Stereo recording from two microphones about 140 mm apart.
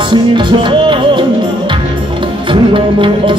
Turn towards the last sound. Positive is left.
turn(degrees=-35)  # may be behind; listen again after turning